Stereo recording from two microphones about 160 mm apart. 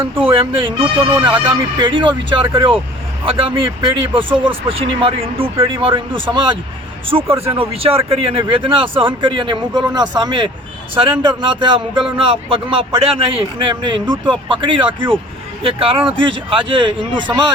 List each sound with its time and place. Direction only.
0.0 s speech: 35° right (ahead or behind)